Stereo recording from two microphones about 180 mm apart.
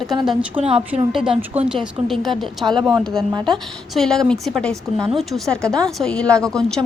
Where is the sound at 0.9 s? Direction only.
35° right (ahead or behind).